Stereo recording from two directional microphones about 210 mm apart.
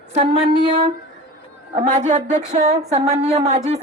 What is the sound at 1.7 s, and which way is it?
A woman's voice, 35° right (ahead or behind).